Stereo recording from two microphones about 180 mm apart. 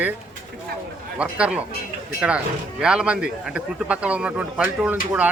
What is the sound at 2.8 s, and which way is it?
A man's voice, 5° right (ahead or behind).